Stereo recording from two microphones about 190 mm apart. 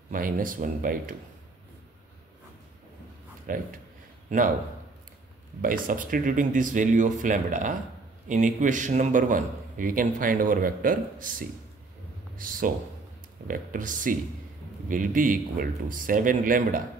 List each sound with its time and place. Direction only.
0.1 s a man's voice: 45° right (ahead or behind)
3.4 s a man's voice: 45° right (ahead or behind)
5.6 s a man's voice: 45° right (ahead or behind)